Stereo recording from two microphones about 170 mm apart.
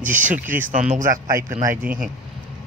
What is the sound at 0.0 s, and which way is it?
Speech, 50° right (ahead or behind).